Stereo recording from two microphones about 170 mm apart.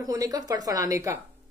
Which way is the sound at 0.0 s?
20° right (ahead or behind).